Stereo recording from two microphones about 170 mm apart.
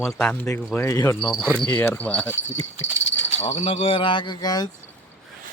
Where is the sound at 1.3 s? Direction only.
5° left (ahead or behind).